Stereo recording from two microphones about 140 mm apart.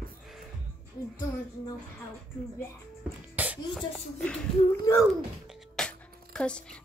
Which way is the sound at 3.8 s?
10° left (ahead or behind).